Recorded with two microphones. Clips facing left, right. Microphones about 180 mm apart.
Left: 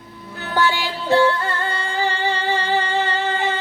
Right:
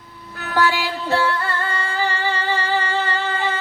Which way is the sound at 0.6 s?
20° left (ahead or behind).